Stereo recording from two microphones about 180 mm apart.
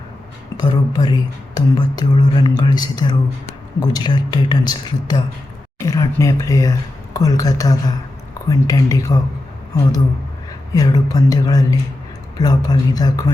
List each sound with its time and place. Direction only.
0.5 s speech: 25° left (ahead or behind)
10.8 s speech: 20° left (ahead or behind)